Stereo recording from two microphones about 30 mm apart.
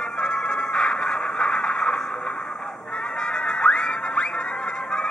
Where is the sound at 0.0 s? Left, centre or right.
Left.